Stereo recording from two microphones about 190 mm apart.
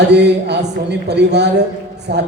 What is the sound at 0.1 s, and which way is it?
Speech, 60° right (ahead or behind).